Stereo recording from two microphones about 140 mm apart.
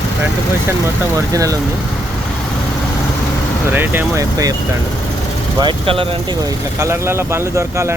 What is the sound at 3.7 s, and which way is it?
Speech, 15° right (ahead or behind).